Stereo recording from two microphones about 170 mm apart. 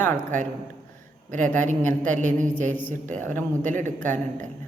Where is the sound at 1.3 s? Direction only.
50° right (ahead or behind).